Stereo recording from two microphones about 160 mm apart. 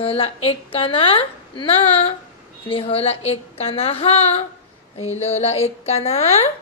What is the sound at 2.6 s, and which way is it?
A woman's voice, 35° left (ahead or behind).